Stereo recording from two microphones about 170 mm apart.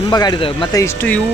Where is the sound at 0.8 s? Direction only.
10° left (ahead or behind).